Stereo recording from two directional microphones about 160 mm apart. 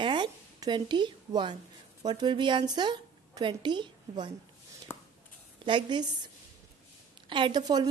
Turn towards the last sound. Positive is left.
turn(degrees=-25)  # may be behind; listen again after turning